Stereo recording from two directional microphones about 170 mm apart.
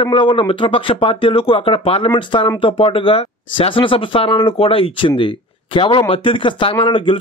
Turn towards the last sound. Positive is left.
turn(degrees=30)  # may be behind; listen again after turning